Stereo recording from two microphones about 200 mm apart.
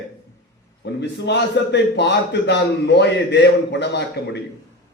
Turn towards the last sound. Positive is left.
turn(degrees=55)  # may be behind; listen again after turning